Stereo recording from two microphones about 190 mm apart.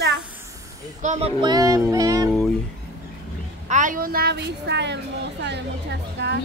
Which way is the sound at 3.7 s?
45° right (ahead or behind).